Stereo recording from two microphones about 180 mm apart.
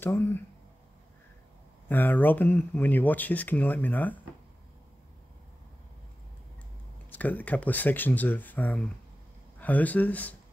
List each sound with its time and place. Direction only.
0.0 s speech: 10° left (ahead or behind)
1.9 s speech: 10° left (ahead or behind)
7.1 s speech: 10° left (ahead or behind)